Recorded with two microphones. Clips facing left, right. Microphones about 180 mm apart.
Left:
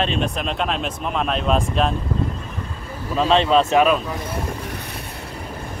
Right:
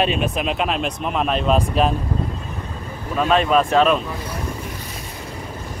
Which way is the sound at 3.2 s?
25° left (ahead or behind).